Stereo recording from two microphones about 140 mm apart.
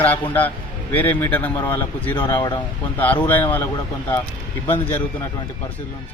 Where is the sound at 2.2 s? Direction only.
30° left (ahead or behind).